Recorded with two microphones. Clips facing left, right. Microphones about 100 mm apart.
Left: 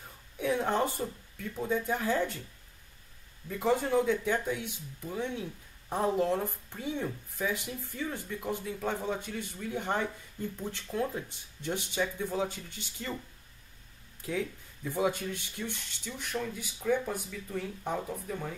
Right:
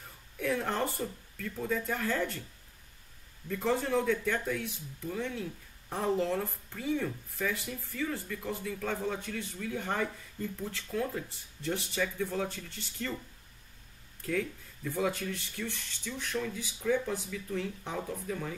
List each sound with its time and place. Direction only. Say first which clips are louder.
0.4 s speech: left 3 dB; 15° left (ahead or behind)
3.4 s speech: left 2 dB; 10° left (ahead or behind)
14.2 s speech: right 1 dB; 15° left (ahead or behind)
16.1 s speech: right 1 dB; 5° left (ahead or behind)